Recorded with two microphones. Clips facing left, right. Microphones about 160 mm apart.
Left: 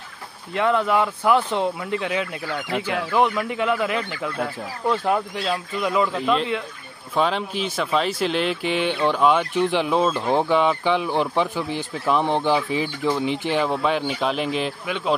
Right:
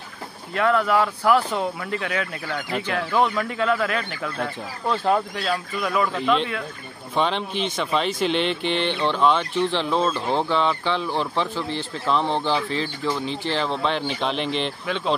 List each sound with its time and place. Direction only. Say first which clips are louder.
0.6 s speech: even; 20° left (ahead or behind)
6.1 s speech: even; 5° left (ahead or behind)